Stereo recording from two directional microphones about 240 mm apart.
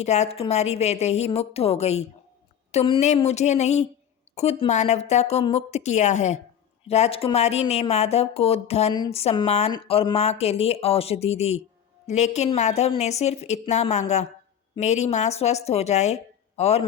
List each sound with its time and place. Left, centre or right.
0.0 s speech: left